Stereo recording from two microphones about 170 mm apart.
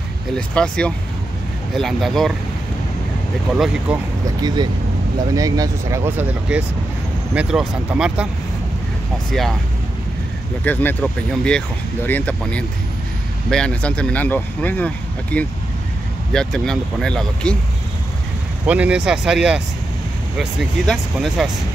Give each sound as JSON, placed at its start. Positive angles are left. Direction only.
{"t": 0.6, "sound": "speech", "side_deg": 5}
{"t": 3.5, "sound": "speech", "side_deg": 0}
{"t": 4.4, "sound": "speech", "side_deg": -25}
{"t": 10.6, "sound": "speech", "side_deg": 10}
{"t": 18.7, "sound": "speech", "side_deg": -5}